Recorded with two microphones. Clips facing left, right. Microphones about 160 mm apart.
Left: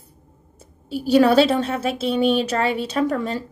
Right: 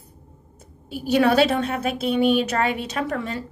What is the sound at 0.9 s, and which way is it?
A woman's voice, 30° left (ahead or behind).